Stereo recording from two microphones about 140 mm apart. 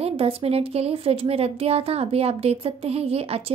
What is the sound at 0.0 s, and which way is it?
Speech, 45° right (ahead or behind).